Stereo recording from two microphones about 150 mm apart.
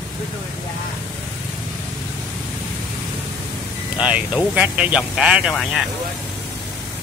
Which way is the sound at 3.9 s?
10° right (ahead or behind).